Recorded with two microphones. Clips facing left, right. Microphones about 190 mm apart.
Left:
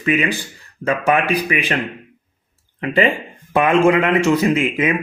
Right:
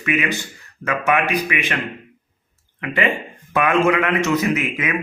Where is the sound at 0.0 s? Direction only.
30° left (ahead or behind).